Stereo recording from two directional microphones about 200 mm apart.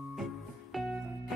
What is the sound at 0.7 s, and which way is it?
Music, centre (ahead or behind).